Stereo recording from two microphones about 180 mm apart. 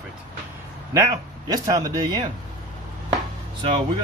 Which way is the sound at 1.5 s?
20° right (ahead or behind).